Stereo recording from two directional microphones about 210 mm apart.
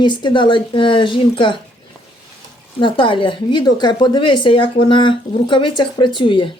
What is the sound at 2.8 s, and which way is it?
A woman's voice, 25° left (ahead or behind).